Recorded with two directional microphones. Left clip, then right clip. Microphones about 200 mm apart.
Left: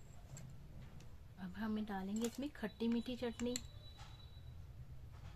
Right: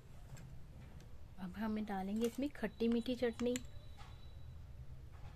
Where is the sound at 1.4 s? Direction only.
30° right (ahead or behind).